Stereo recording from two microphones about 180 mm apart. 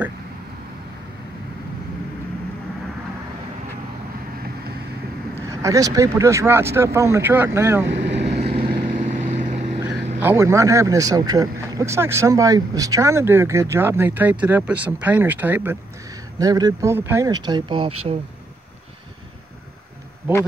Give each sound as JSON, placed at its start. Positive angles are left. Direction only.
{"t": 5.3, "sound": "speech", "side_deg": -15}
{"t": 7.9, "sound": "vehicle", "side_deg": -70}
{"t": 8.5, "sound": "vehicle", "side_deg": -30}
{"t": 8.8, "sound": "vehicle", "side_deg": -45}
{"t": 10.2, "sound": "speech", "side_deg": -15}